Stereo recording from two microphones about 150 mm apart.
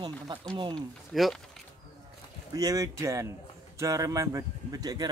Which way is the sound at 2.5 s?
25° right (ahead or behind).